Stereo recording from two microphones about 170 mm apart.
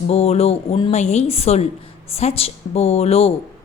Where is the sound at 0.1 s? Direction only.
40° left (ahead or behind).